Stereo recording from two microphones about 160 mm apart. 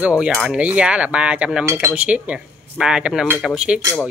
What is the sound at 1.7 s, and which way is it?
Speech, 15° right (ahead or behind).